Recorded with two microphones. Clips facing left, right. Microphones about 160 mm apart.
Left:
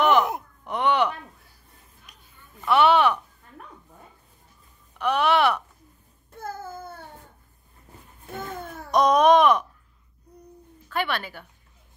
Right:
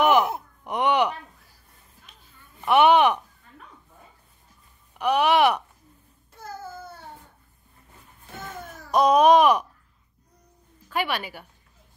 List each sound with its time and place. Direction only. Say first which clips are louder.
0.0 s groan: right 1 dB; 10° right (ahead or behind)
0.7 s a sound: right 1 dB; 15° right (ahead or behind)
2.6 s speech: right 2 dB; 15° right (ahead or behind)
4.9 s wail: right 1 dB; 10° right (ahead or behind)
6.3 s babbling: left 3 dB; 55° left (ahead or behind)
8.4 s a sound: left 4 dB; 55° left (ahead or behind)
8.9 s baby cry: right 1 dB; 5° right (ahead or behind)
10.9 s speech: even; 10° right (ahead or behind)